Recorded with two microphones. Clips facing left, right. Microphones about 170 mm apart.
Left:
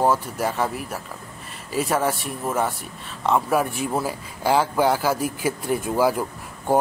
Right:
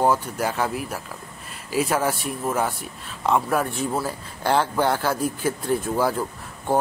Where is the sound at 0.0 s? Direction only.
Centre (ahead or behind).